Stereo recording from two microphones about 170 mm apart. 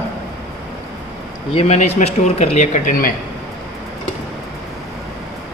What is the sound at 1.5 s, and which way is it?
Speech, 40° left (ahead or behind).